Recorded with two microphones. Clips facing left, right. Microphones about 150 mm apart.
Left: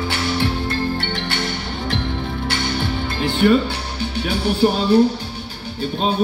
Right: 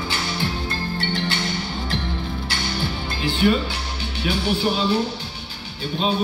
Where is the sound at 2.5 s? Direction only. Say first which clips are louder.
Left 5 dB; 60° left (ahead or behind).